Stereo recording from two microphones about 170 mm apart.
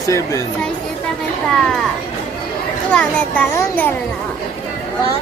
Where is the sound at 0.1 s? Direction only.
20° left (ahead or behind).